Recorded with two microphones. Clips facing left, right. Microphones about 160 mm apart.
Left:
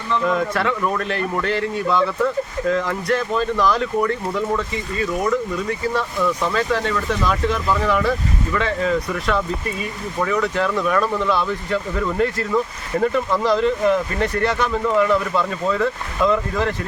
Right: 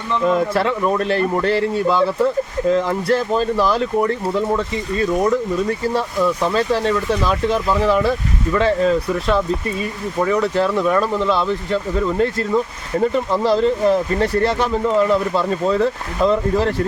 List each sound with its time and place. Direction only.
0.3 s speech: 30° right (ahead or behind)
6.5 s speech: 30° right (ahead or behind)